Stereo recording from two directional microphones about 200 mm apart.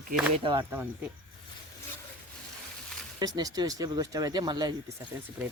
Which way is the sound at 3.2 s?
20° right (ahead or behind).